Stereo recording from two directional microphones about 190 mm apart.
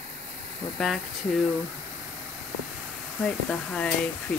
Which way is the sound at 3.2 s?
5° left (ahead or behind).